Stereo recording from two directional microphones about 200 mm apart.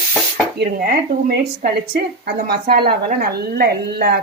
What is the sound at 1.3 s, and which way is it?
A woman's voice, 55° right (ahead or behind).